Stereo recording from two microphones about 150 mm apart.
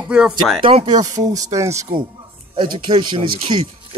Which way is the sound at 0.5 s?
35° right (ahead or behind).